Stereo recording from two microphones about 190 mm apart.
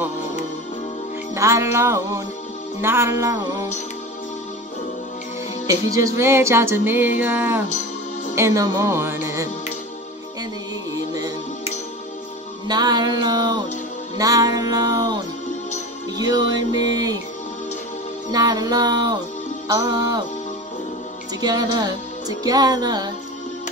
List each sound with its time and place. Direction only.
1.3 s music: 15° right (ahead or behind)
5.7 s music: 15° right (ahead or behind)
12.6 s music: 20° right (ahead or behind)
18.3 s music: 20° right (ahead or behind)
21.4 s music: 20° right (ahead or behind)